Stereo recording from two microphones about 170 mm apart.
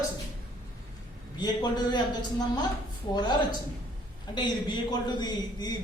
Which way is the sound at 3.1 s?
25° left (ahead or behind).